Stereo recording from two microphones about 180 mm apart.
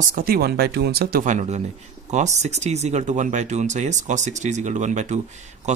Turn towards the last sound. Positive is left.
turn(degrees=-40)  # may be behind; listen again after turning